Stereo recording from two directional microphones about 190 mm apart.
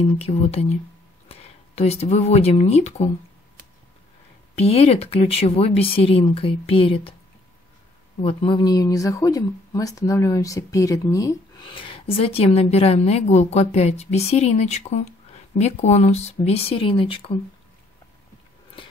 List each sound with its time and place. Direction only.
0.2 s speech: 30° left (ahead or behind)
4.6 s speech: 30° left (ahead or behind)
8.2 s speech: 30° left (ahead or behind)